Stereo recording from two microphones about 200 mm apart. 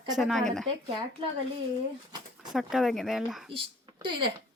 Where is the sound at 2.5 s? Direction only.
Centre (ahead or behind).